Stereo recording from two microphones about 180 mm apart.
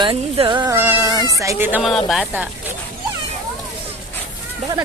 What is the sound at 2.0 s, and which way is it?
Speech, centre (ahead or behind).